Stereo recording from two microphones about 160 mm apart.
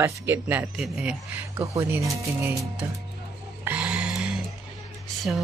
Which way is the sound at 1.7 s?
15° right (ahead or behind).